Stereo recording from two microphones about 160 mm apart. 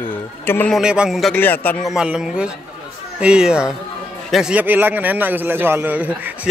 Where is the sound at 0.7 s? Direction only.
5° right (ahead or behind).